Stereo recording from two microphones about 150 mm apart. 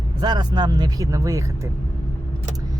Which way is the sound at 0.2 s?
30° right (ahead or behind).